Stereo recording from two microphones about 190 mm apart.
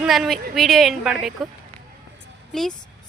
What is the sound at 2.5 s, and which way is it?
Speech, 5° left (ahead or behind).